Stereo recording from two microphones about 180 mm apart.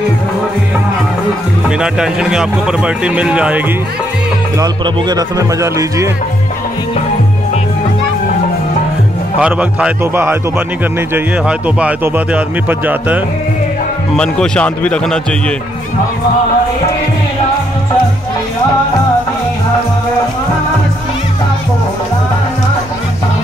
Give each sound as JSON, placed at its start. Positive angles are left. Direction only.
{"t": 1.8, "sound": "speech", "side_deg": -5}
{"t": 4.6, "sound": "speech", "side_deg": -20}
{"t": 9.4, "sound": "speech", "side_deg": -5}
{"t": 14.1, "sound": "speech", "side_deg": 5}